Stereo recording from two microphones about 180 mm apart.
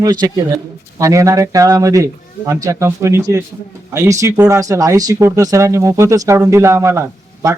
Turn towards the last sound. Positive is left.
turn(degrees=-15)  # may be behind; listen again after turning